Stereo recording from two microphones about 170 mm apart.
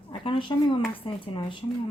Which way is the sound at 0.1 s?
30° left (ahead or behind).